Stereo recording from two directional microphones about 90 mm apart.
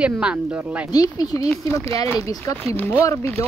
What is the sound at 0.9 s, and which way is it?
Speech, 45° left (ahead or behind).